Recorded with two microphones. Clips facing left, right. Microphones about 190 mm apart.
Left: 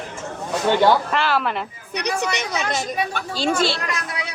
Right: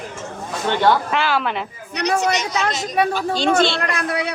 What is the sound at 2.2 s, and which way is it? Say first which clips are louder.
Speech: right 4 dB; 60° left (ahead or behind).